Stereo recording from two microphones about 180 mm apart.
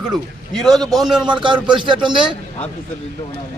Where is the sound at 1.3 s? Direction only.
25° right (ahead or behind).